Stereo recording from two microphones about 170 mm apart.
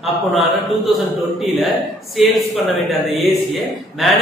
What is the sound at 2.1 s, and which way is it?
Speech, centre (ahead or behind).